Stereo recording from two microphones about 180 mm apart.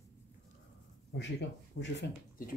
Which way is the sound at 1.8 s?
65° left (ahead or behind).